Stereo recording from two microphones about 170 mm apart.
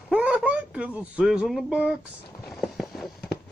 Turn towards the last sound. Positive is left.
turn(degrees=70)  # may be behind; listen again after turning